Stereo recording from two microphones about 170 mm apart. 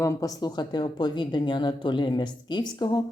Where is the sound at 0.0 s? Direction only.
20° left (ahead or behind).